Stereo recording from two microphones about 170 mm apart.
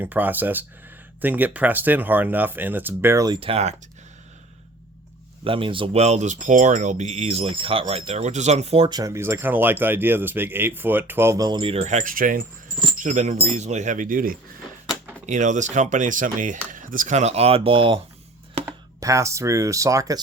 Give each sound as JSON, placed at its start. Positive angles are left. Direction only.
{"t": 0.0, "sound": "speech", "side_deg": -10}
{"t": 3.4, "sound": "speech", "side_deg": -35}
{"t": 5.5, "sound": "speech", "side_deg": -30}
{"t": 15.3, "sound": "speech", "side_deg": -45}
{"t": 18.6, "sound": "speech", "side_deg": -20}